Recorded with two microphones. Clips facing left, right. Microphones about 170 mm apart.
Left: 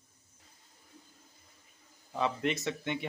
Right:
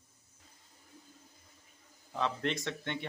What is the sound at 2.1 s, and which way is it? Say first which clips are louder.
Speech: left 2 dB; 10° left (ahead or behind).